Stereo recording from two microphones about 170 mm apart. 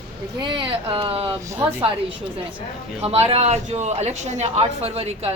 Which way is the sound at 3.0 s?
35° right (ahead or behind).